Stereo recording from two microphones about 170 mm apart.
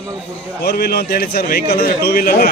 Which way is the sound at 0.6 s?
70° left (ahead or behind).